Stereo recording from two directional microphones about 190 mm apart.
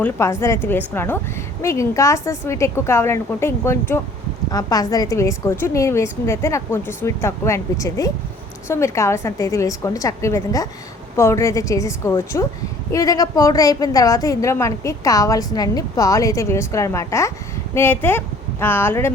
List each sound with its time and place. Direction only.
0.0 s a woman's voice: 15° left (ahead or behind)